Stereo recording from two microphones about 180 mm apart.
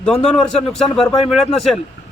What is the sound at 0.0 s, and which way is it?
Speech, 5° left (ahead or behind).